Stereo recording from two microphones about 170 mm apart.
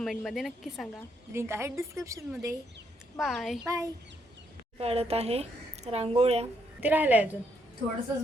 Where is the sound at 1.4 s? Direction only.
15° right (ahead or behind).